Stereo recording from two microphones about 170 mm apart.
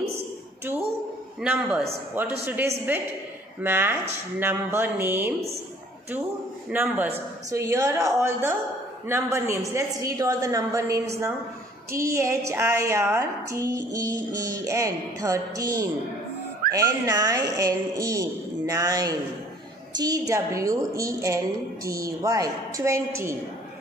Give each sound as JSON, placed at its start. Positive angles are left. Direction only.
{"t": 1.4, "sound": "a woman's voice", "side_deg": -10}
{"t": 6.7, "sound": "a woman's voice", "side_deg": -10}